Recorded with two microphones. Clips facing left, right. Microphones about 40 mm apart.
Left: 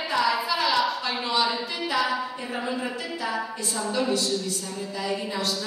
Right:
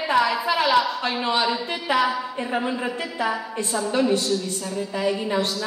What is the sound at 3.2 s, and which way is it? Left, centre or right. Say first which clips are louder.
Speech: right 5 dB; right.